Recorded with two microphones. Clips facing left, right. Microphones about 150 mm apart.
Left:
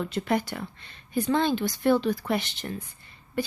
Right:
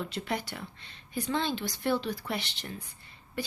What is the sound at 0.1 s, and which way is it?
A woman's voice, 50° left (ahead or behind).